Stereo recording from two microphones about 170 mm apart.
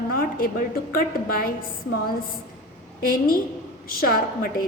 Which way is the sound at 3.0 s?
60° left (ahead or behind).